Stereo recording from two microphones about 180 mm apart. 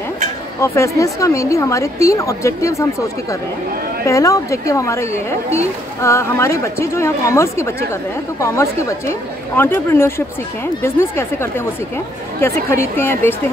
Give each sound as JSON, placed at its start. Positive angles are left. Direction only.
{"t": 0.6, "sound": "a woman's voice", "side_deg": 15}